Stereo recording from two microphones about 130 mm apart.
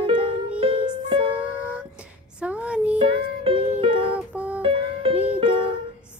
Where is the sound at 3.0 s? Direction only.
45° right (ahead or behind).